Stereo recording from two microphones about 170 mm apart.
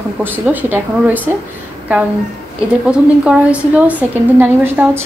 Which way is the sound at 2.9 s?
5° right (ahead or behind).